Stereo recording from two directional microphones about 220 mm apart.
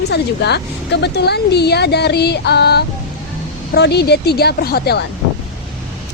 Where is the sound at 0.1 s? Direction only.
50° left (ahead or behind).